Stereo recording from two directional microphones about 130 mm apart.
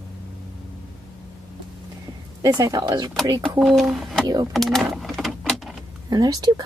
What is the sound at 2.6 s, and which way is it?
A woman's voice, 30° right (ahead or behind).